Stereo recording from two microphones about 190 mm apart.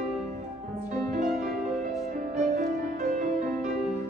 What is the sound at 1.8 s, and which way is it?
Music, 40° right (ahead or behind).